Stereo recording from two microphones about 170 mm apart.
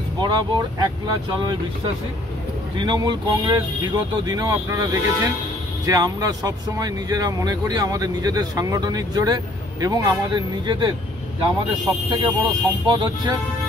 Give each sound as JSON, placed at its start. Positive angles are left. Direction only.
{"t": 0.2, "sound": "speech", "side_deg": -25}
{"t": 2.8, "sound": "speech", "side_deg": -25}